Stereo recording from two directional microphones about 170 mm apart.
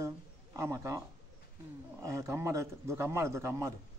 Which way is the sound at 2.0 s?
20° right (ahead or behind).